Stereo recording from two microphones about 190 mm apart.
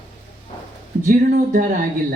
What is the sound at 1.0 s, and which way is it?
Speech, 45° right (ahead or behind).